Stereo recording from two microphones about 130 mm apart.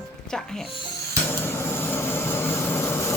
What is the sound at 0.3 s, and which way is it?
Speech, 5° left (ahead or behind).